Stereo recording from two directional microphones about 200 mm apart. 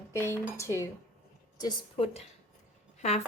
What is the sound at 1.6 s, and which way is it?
Speech, 25° left (ahead or behind).